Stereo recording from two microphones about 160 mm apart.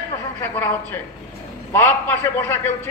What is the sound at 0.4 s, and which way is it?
A man's voice, 15° left (ahead or behind).